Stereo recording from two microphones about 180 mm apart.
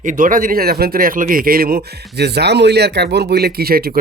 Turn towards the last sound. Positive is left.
turn(degrees=-55)  # may be behind; listen again after turning